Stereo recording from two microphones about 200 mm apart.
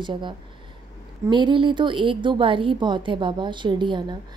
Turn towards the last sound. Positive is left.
turn(degrees=-25)  # may be behind; listen again after turning